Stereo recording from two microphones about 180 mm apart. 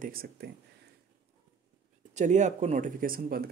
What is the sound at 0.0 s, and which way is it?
Speech, 55° right (ahead or behind).